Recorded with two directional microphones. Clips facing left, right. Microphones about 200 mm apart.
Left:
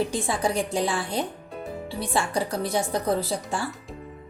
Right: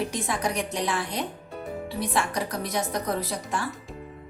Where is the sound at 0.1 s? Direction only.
30° left (ahead or behind).